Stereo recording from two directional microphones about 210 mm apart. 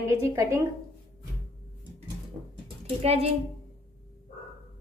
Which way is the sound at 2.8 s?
30° right (ahead or behind).